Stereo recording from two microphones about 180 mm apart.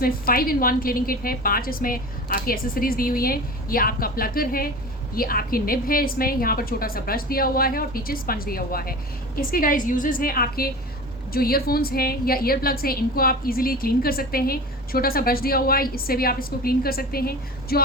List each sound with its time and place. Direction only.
0.0 s a woman's voice: 55° left (ahead or behind)